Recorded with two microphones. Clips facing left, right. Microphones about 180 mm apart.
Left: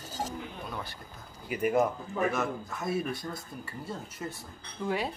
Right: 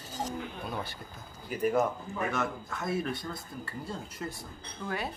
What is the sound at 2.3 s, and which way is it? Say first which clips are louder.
Speech: left 1 dB; 5° left (ahead or behind).